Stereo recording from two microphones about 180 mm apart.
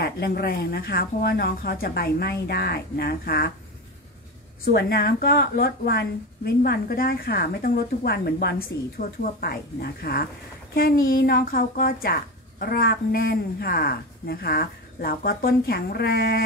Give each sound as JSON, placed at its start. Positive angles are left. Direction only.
{"t": 0.0, "sound": "speech", "side_deg": 60}
{"t": 4.7, "sound": "speech", "side_deg": 60}